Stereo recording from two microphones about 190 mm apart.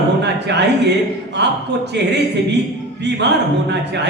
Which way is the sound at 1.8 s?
65° right (ahead or behind).